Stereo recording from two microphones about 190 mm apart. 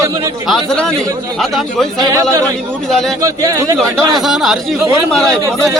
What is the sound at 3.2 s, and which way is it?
Speech, 15° right (ahead or behind).